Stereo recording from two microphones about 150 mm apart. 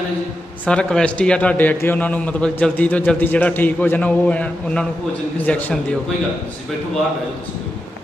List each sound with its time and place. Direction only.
0.6 s a man's voice: 5° left (ahead or behind)